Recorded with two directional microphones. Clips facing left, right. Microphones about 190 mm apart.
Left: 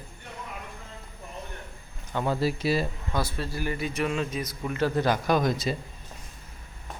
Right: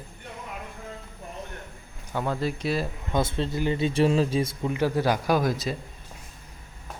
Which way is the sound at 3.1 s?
25° right (ahead or behind).